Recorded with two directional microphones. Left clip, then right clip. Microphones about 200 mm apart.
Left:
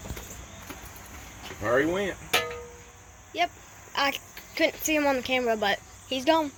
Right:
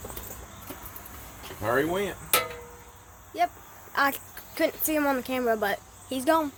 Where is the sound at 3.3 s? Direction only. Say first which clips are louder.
Right 1 dB; centre (ahead or behind).